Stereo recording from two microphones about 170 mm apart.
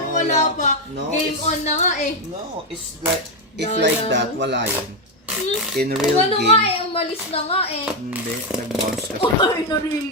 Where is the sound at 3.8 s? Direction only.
90° right.